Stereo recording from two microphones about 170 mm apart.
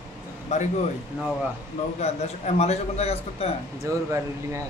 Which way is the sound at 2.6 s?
40° left (ahead or behind).